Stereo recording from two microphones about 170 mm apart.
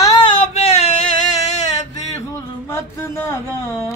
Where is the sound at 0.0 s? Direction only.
20° left (ahead or behind).